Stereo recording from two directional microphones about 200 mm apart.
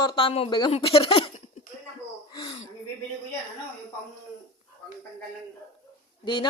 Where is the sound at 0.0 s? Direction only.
25° left (ahead or behind).